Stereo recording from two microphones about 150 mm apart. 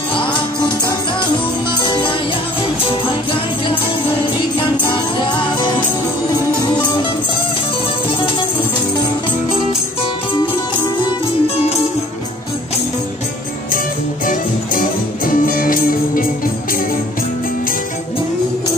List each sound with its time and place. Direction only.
0.1 s music: 30° left (ahead or behind)
4.9 s music: 30° left (ahead or behind)
14.2 s music: 65° left (ahead or behind)